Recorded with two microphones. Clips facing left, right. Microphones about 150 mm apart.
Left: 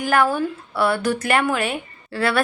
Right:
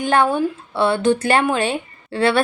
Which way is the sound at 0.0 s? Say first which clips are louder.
Right 2 dB; 25° right (ahead or behind).